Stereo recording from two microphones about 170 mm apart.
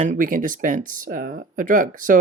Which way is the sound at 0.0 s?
50° right (ahead or behind).